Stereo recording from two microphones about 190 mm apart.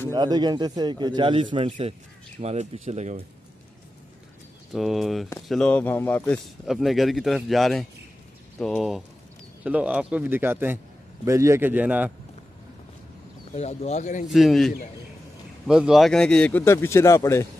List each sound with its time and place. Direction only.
0.1 s a man's voice: 20° right (ahead or behind); by 3.3 s 35° right (ahead or behind)
4.7 s a man's voice: centre (ahead or behind)
13.6 s speech: 35° left (ahead or behind)
14.2 s a man's voice: centre (ahead or behind); by 17.5 s 15° left (ahead or behind)